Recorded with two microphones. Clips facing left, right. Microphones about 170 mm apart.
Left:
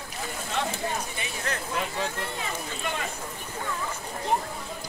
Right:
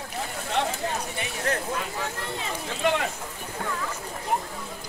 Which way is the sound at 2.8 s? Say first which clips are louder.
Right 10 dB; 75° right (ahead or behind).